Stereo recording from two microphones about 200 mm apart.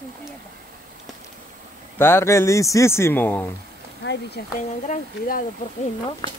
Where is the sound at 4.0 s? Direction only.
60° left (ahead or behind).